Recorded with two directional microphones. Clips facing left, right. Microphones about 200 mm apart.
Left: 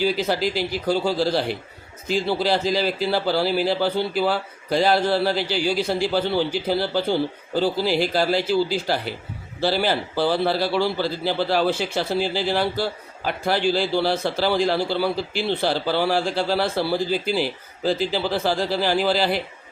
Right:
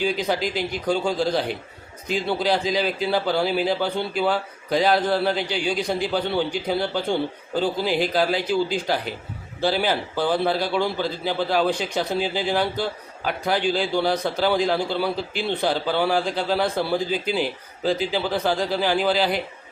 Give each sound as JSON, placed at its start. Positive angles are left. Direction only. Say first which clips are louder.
{"t": 0.0, "sound": "a man's voice", "louder": "left 2 dB", "side_deg": 5}
{"t": 7.9, "sound": "speech", "louder": "left 1 dB", "side_deg": -50}
{"t": 8.4, "sound": "a man's voice", "louder": "left 1 dB", "side_deg": 5}